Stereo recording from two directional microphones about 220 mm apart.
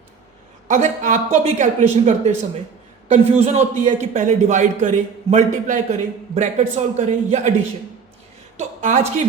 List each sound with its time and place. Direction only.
0.7 s a man's voice: 35° right (ahead or behind)
8.5 s a woman's voice: 35° right (ahead or behind)